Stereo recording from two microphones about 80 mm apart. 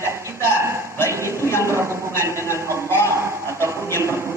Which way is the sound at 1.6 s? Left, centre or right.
Right.